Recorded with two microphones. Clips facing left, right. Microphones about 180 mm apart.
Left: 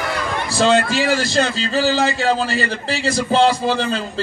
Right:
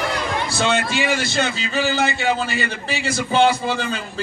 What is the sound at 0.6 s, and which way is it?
A man's voice, 35° left (ahead or behind).